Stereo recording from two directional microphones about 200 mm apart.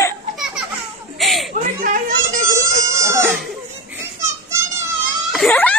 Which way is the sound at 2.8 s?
15° right (ahead or behind).